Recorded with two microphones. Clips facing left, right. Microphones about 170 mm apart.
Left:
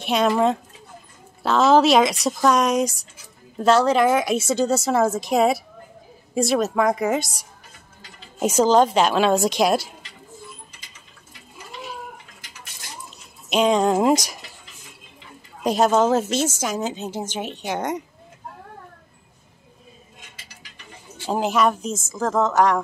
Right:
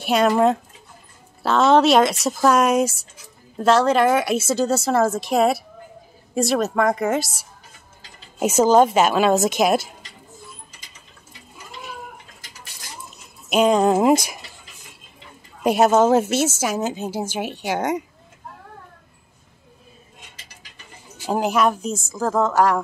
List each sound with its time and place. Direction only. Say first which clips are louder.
0.0 s a woman's voice: right 2 dB; 5° right (ahead or behind)
13.5 s a woman's voice: right 2 dB; 5° right (ahead or behind)
14.1 s speech: right 2 dB; 55° right (ahead or behind)
15.6 s a woman's voice: right 2 dB; 5° right (ahead or behind)
21.3 s a woman's voice: right 1 dB; centre (ahead or behind)